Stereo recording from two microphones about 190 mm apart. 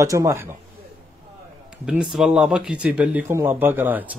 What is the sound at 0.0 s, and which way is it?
Speech, 15° right (ahead or behind).